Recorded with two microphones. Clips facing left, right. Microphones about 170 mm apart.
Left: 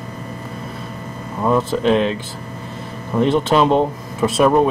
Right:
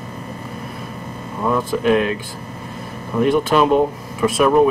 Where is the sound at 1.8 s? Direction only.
25° left (ahead or behind).